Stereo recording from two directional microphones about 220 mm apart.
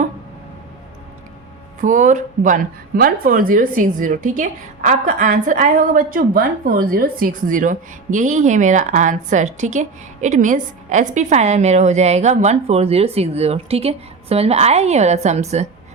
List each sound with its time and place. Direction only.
1.8 s speech: 35° right (ahead or behind)